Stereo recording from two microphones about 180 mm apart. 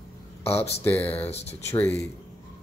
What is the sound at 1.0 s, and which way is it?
Speech, 35° left (ahead or behind).